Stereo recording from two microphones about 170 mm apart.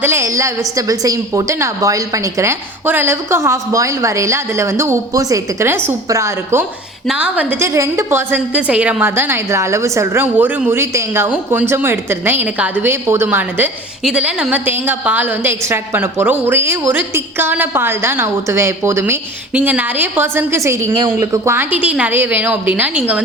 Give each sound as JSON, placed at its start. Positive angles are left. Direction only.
{"t": 0.0, "sound": "a woman's voice", "side_deg": -15}